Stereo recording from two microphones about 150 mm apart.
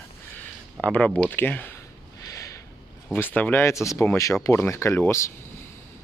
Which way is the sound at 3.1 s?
10° left (ahead or behind).